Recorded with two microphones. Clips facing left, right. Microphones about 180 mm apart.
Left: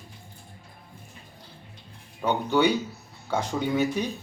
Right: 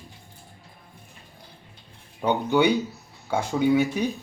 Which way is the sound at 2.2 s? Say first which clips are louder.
Right 2 dB; 15° right (ahead or behind).